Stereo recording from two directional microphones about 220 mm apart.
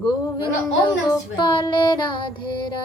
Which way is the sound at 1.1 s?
20° left (ahead or behind).